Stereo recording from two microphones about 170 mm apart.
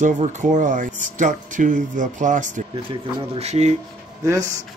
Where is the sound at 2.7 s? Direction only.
30° right (ahead or behind).